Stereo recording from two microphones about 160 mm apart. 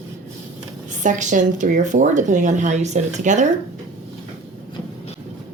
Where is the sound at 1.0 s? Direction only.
50° right (ahead or behind).